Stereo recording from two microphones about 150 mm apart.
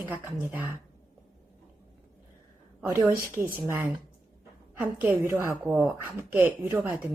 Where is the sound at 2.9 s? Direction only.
15° right (ahead or behind).